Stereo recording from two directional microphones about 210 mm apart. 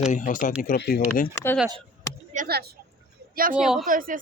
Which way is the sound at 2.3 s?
45° right (ahead or behind).